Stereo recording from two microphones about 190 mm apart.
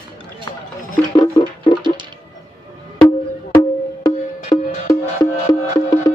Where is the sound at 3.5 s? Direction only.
20° left (ahead or behind).